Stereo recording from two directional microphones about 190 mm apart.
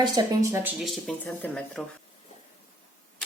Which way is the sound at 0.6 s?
5° right (ahead or behind).